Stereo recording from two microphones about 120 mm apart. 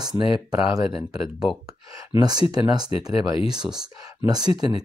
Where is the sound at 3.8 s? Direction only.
35° right (ahead or behind).